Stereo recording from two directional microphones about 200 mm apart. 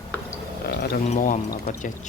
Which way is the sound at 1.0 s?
40° left (ahead or behind).